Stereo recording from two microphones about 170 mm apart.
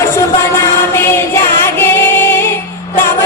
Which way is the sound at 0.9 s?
15° left (ahead or behind).